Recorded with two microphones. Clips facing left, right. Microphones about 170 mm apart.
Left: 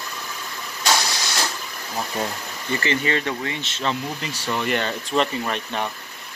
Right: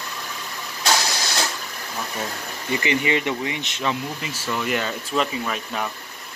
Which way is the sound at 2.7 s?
15° right (ahead or behind).